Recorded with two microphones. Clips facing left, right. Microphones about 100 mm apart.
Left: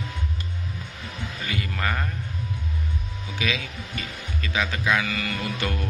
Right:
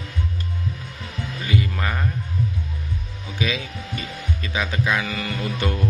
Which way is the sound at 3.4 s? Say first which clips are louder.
Right 3 dB; 25° right (ahead or behind).